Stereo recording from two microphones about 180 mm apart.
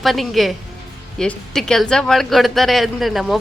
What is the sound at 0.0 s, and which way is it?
A woman's voice, centre (ahead or behind).